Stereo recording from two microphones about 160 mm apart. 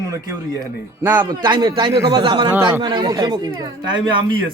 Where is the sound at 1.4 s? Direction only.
30° right (ahead or behind).